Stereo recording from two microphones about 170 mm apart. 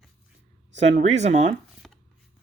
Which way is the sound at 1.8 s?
Centre (ahead or behind).